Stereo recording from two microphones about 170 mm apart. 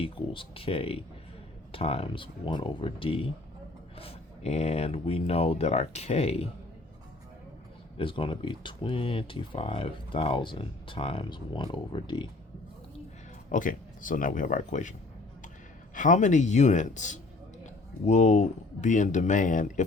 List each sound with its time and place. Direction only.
0.0 s speech: 35° left (ahead or behind)
7.9 s speech: 30° left (ahead or behind)
13.5 s speech: 50° left (ahead or behind)
16.0 s speech: 45° left (ahead or behind)